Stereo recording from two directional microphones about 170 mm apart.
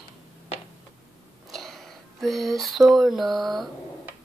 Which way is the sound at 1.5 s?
Centre (ahead or behind).